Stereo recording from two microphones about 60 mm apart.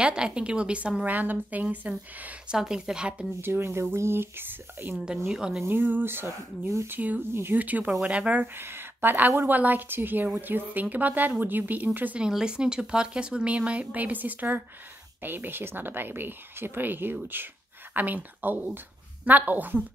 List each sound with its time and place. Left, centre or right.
0.0 s a woman's voice: centre
2.5 s speech: centre
3.3 s a woman's voice: right
5.2 s speech: centre
5.7 s a woman's voice: right
6.9 s a woman's voice: right
7.2 s a woman's voice: right
7.5 s a woman's voice: right
8.5 s a woman's voice: right
12.2 s a woman's voice: centre; by 19.8 s right